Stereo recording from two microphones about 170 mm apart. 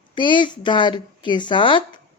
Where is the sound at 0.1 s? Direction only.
30° left (ahead or behind).